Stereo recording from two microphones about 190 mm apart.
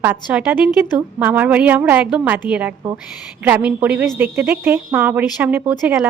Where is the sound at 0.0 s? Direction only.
10° right (ahead or behind).